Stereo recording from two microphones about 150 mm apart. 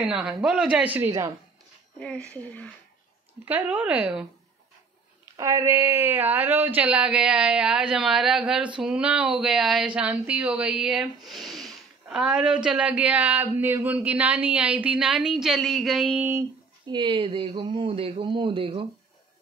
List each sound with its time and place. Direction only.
0.0 s speech: 5° right (ahead or behind)
2.0 s speech: 5° left (ahead or behind)
3.4 s speech: 10° right (ahead or behind)
5.3 s speech: 20° right (ahead or behind); by 16.3 s 5° right (ahead or behind)
16.8 s speech: 30° right (ahead or behind)